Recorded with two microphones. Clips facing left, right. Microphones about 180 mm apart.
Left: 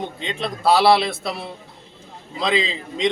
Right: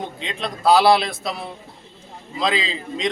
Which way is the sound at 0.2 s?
Centre (ahead or behind).